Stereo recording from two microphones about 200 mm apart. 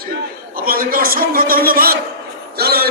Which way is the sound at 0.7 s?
45° right (ahead or behind).